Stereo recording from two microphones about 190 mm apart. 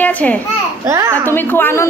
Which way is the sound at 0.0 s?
10° left (ahead or behind).